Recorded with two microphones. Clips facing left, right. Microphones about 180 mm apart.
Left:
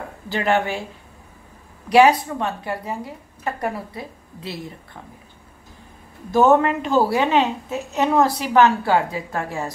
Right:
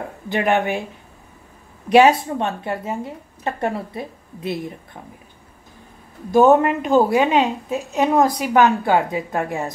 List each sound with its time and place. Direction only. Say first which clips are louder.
0.3 s a woman's voice: right 2 dB; 20° right (ahead or behind)
1.9 s a woman's voice: right 1 dB; 20° right (ahead or behind)
6.3 s a woman's voice: right 2 dB; 15° right (ahead or behind)